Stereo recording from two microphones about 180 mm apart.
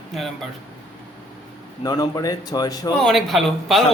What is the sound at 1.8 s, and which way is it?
Speech, 20° left (ahead or behind).